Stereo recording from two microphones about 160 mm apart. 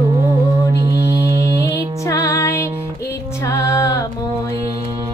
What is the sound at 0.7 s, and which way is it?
Music, 20° right (ahead or behind).